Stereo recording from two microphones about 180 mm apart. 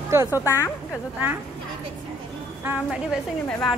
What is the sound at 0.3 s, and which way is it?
Speech, 15° left (ahead or behind).